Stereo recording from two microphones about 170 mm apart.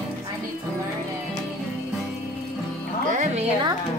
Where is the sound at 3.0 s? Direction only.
50° right (ahead or behind).